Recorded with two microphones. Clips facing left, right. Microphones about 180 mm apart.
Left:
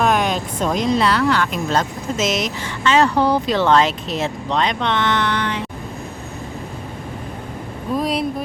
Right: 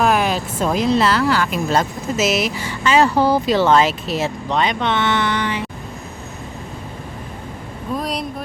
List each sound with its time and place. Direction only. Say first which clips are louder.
0.0 s speech: right 1 dB; 5° right (ahead or behind)
7.9 s speech: left 4 dB; centre (ahead or behind)